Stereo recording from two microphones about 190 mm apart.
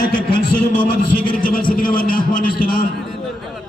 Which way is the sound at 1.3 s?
45° left (ahead or behind).